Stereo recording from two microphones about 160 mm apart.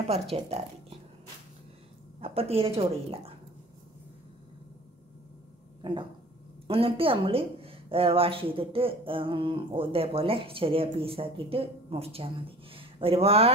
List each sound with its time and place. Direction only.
0.1 s a woman's voice: 40° right (ahead or behind)
2.1 s a woman's voice: 40° right (ahead or behind)
5.8 s a sound: 30° right (ahead or behind)
6.7 s a woman's voice: 35° right (ahead or behind)